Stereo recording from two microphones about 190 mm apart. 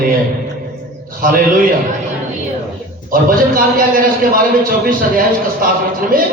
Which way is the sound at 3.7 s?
50° right (ahead or behind).